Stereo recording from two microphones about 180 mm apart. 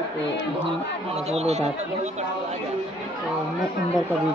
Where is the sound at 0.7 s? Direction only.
35° right (ahead or behind).